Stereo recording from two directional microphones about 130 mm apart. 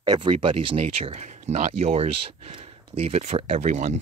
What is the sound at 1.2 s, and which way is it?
Speech, 65° right (ahead or behind).